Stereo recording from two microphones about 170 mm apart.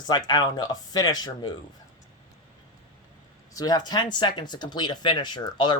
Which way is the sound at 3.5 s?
25° left (ahead or behind).